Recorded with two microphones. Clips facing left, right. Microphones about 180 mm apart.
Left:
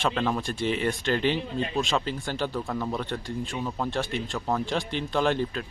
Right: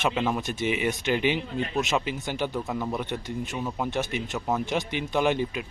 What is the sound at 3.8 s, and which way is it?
A man's voice, 20° right (ahead or behind).